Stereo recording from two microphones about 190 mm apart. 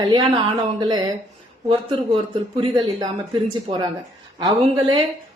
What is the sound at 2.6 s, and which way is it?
Speech, 20° right (ahead or behind).